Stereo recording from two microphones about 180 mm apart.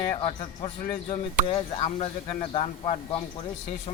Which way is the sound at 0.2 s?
30° left (ahead or behind).